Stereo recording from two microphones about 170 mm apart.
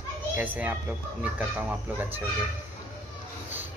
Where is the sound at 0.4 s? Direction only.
10° right (ahead or behind).